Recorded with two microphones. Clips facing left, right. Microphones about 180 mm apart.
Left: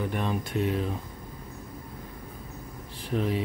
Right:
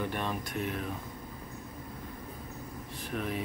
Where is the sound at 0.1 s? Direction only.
15° left (ahead or behind).